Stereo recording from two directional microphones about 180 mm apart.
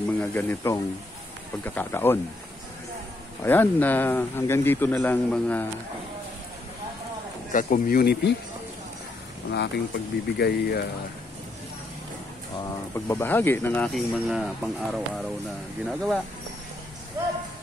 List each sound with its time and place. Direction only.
0.2 s speech: 10° left (ahead or behind)
3.4 s speech: 10° left (ahead or behind)
7.5 s speech: 50° left (ahead or behind); by 8.4 s 65° left (ahead or behind)
9.5 s speech: 65° left (ahead or behind)
12.9 s speech: 15° left (ahead or behind)
14.3 s speech: 5° right (ahead or behind)